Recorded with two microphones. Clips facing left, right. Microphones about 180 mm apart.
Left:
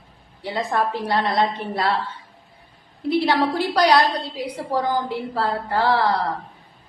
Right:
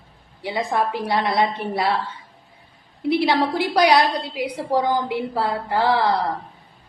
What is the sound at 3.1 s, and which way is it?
A woman's voice, 15° right (ahead or behind).